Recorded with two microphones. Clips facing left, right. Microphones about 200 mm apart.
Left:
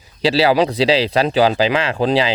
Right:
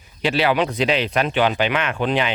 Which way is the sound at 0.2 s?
35° left (ahead or behind).